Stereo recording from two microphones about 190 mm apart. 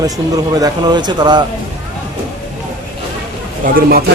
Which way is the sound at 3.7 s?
55° right (ahead or behind).